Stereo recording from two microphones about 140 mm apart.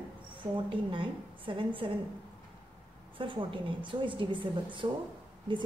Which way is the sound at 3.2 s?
35° right (ahead or behind).